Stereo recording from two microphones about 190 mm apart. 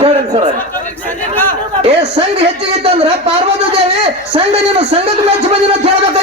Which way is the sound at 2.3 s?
30° right (ahead or behind).